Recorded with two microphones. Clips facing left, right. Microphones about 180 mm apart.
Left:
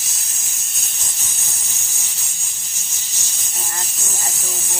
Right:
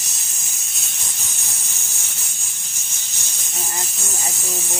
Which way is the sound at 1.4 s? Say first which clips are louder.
Even; centre (ahead or behind).